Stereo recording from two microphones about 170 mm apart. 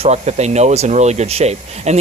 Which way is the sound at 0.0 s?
40° right (ahead or behind).